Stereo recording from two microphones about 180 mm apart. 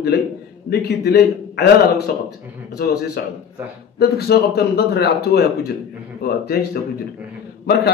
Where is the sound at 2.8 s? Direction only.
65° left (ahead or behind).